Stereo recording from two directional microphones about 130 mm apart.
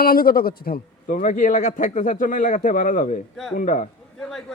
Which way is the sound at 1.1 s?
85° left.